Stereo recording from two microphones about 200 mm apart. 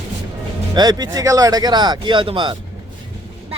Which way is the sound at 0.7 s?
20° right (ahead or behind).